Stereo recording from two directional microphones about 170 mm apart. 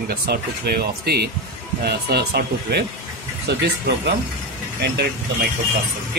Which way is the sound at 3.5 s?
90° right.